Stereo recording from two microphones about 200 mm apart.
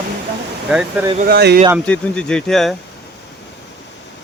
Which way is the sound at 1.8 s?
5° left (ahead or behind).